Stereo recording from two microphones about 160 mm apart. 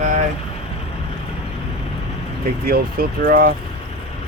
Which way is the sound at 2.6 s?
70° right (ahead or behind).